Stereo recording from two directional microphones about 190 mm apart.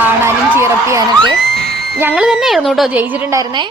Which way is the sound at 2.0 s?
10° right (ahead or behind).